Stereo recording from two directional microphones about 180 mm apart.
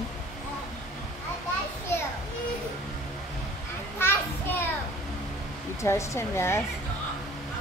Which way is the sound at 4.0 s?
10° left (ahead or behind).